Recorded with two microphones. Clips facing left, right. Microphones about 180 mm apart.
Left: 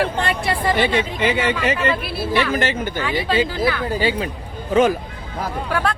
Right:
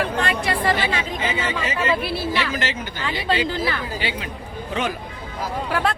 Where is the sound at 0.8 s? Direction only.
65° left (ahead or behind).